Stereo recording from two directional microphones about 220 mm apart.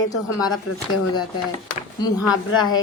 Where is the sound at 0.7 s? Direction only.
90° left.